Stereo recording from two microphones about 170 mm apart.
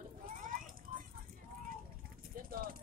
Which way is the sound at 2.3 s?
60° right (ahead or behind).